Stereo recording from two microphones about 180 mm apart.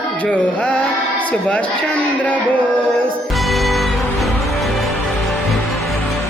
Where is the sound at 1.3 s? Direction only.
10° left (ahead or behind).